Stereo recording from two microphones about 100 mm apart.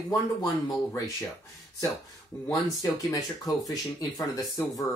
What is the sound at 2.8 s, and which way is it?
Speech, 35° left (ahead or behind).